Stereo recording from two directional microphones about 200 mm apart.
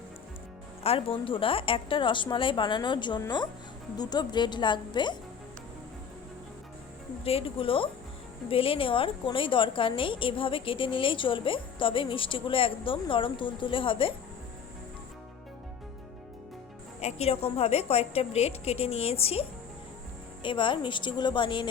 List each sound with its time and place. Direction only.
0.8 s a woman's voice: 30° left (ahead or behind)
7.3 s a woman's voice: 30° left (ahead or behind)
17.0 s a woman's voice: 30° left (ahead or behind)